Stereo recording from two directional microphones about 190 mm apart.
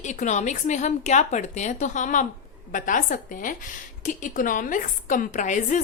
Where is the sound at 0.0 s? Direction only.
40° left (ahead or behind).